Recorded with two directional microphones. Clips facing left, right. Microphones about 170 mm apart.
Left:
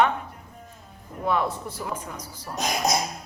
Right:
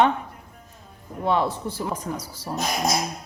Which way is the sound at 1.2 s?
30° right (ahead or behind).